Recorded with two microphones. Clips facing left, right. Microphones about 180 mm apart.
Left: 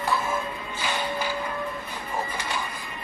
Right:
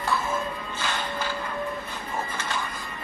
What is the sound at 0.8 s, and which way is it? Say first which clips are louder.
Music: left 2 dB; 10° left (ahead or behind).